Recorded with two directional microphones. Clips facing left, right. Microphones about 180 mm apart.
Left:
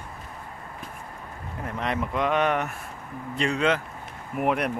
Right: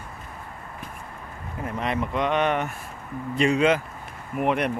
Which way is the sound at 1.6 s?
Centre (ahead or behind).